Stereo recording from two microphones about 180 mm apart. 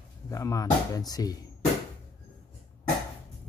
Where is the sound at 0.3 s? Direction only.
20° left (ahead or behind).